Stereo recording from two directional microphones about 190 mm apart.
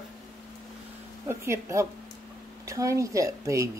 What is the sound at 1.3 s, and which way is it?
Speech, 15° right (ahead or behind).